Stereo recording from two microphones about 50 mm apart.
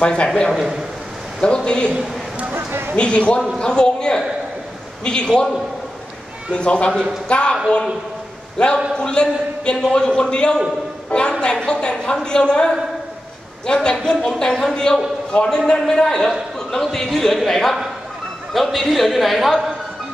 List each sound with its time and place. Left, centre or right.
0.0 s a man's voice: centre
0.5 s a man's voice: centre
1.4 s a man's voice: centre
2.5 s a sound: right
3.0 s a man's voice: left
6.5 s a man's voice: left
8.5 s a man's voice: centre